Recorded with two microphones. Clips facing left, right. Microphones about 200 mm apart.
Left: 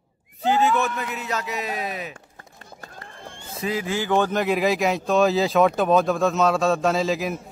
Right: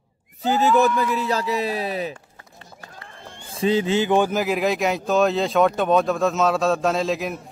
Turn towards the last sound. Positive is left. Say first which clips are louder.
# even
turn(degrees=0)  # may be behind; listen again after turning